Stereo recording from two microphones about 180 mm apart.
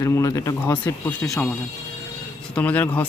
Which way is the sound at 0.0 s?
15° left (ahead or behind).